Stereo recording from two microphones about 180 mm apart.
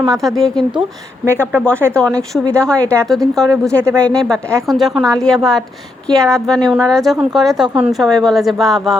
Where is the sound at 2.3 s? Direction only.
5° left (ahead or behind).